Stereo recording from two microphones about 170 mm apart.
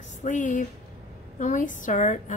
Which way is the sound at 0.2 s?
45° left (ahead or behind).